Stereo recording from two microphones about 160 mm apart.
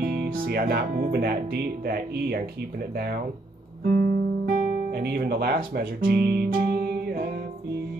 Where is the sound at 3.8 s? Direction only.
65° right (ahead or behind); by 5.6 s 85° right.